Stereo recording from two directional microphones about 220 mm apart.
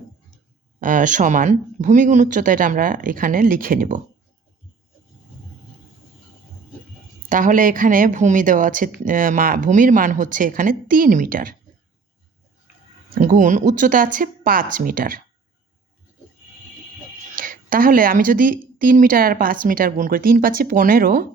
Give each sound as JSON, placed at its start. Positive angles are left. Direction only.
{"t": 0.8, "sound": "a woman's voice", "side_deg": -35}
{"t": 7.3, "sound": "a woman's voice", "side_deg": -35}
{"t": 13.1, "sound": "a woman's voice", "side_deg": -40}
{"t": 17.3, "sound": "a woman's voice", "side_deg": -40}